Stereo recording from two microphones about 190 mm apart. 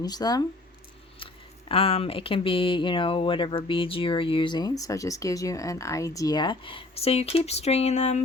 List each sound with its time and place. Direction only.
0.0 s speech: 20° left (ahead or behind); by 8.2 s 35° left (ahead or behind)